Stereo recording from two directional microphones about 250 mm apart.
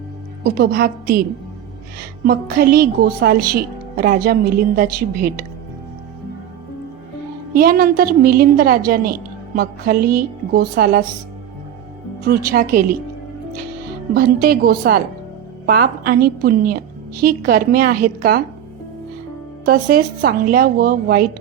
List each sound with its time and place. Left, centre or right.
0.4 s a woman's voice: right
2.2 s a woman's voice: right
7.5 s a woman's voice: right
12.5 s a woman's voice: right
14.1 s a woman's voice: right
19.6 s a woman's voice: right